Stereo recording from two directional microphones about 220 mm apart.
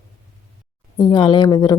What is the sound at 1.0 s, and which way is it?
Speech, 20° left (ahead or behind).